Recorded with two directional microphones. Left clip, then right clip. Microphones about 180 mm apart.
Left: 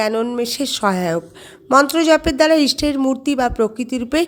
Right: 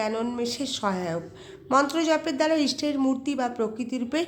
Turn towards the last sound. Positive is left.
turn(degrees=40)  # may be behind; listen again after turning